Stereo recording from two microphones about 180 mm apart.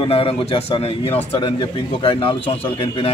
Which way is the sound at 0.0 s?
30° left (ahead or behind).